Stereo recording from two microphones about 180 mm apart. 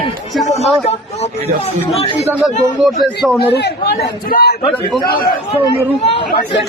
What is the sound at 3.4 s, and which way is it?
A man's voice, 65° left (ahead or behind).